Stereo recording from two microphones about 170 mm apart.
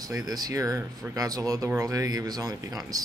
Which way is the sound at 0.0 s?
20° right (ahead or behind).